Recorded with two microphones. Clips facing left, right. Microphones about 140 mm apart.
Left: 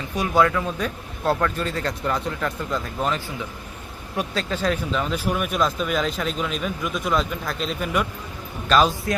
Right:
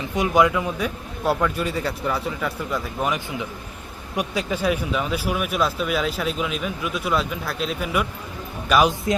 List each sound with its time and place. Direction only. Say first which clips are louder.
0.1 s speech: right 1 dB; 20° right (ahead or behind)
4.2 s speech: right 1 dB; 10° right (ahead or behind)
8.7 s speech: even; 15° right (ahead or behind)